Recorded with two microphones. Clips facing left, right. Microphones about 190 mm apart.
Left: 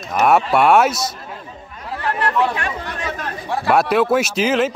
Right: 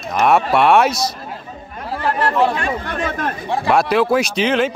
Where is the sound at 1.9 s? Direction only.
30° right (ahead or behind).